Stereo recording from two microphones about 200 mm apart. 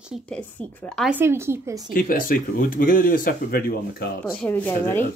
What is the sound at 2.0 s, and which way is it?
Speech, 45° left (ahead or behind).